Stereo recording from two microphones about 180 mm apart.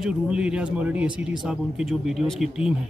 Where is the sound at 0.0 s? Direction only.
5° right (ahead or behind).